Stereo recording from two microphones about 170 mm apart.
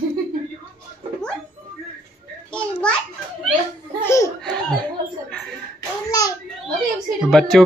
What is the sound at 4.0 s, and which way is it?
Laughter, 15° left (ahead or behind).